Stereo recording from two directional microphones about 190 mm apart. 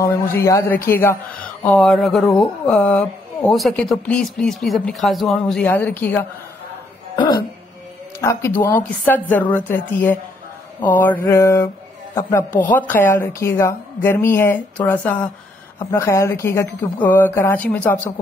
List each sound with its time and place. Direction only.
0.0 s speech: 15° left (ahead or behind)
8.2 s speech: 15° left (ahead or behind)